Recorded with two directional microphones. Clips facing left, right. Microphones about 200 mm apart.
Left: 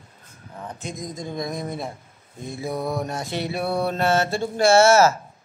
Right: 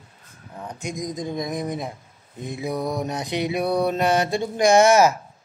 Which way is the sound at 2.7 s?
Centre (ahead or behind).